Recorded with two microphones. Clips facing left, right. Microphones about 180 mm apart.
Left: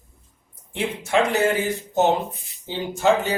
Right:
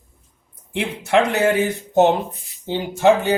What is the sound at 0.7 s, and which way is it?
Speech, 60° right (ahead or behind).